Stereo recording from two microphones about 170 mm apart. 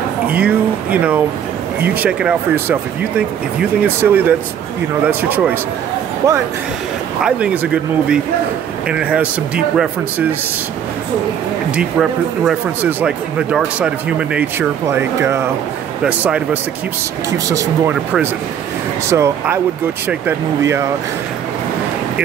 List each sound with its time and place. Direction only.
0.3 s speech: 10° right (ahead or behind)
7.2 s speech: 5° right (ahead or behind)
11.7 s speech: 5° right (ahead or behind)
17.3 s speech: 20° right (ahead or behind)
19.0 s speech: 15° right (ahead or behind)